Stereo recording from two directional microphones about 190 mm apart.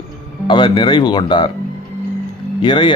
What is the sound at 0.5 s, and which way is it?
A man's voice, 25° left (ahead or behind).